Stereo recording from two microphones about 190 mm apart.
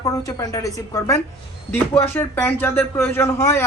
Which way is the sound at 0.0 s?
15° left (ahead or behind).